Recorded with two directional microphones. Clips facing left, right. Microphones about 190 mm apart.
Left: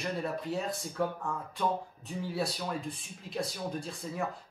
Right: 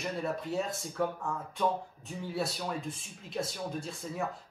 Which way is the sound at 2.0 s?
Centre (ahead or behind).